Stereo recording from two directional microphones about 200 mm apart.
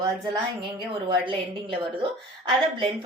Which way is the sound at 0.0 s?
25° right (ahead or behind).